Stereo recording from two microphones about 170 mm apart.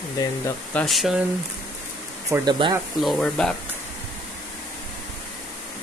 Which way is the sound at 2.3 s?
25° right (ahead or behind).